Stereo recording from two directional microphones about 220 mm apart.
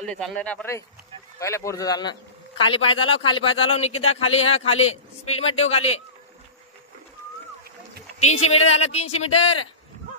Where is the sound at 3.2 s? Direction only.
25° left (ahead or behind).